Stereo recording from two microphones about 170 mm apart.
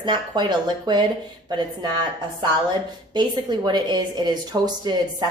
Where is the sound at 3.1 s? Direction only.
25° right (ahead or behind).